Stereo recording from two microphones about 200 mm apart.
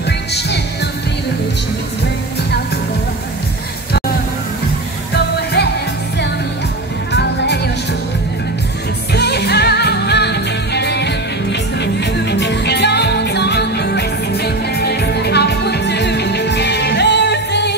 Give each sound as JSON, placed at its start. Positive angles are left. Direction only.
{"t": 0.0, "sound": "music", "side_deg": 55}
{"t": 7.1, "sound": "music", "side_deg": 60}
{"t": 9.1, "sound": "music", "side_deg": 55}